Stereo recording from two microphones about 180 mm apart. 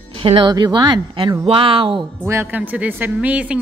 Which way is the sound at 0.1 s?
30° right (ahead or behind).